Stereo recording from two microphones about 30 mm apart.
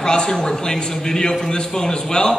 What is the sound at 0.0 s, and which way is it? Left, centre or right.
A man's voice, left.